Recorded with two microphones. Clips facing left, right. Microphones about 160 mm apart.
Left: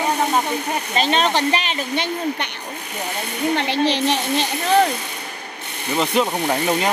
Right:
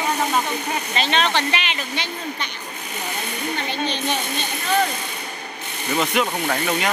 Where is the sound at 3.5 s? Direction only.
80° left.